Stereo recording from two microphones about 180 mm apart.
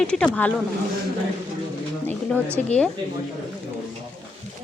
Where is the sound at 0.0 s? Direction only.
5° left (ahead or behind).